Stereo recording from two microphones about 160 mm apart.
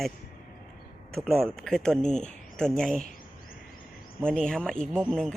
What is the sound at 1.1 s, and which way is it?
Speech, centre (ahead or behind).